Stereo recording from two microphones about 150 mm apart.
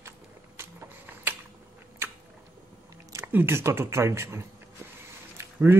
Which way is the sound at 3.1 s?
15° right (ahead or behind).